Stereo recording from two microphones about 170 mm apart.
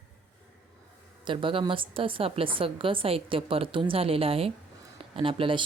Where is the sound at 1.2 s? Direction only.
30° right (ahead or behind).